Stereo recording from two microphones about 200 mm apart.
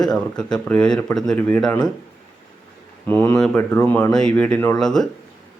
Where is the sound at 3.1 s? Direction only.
10° left (ahead or behind).